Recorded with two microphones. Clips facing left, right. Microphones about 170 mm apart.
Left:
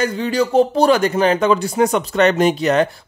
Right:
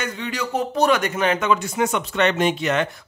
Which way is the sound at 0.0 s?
35° left (ahead or behind).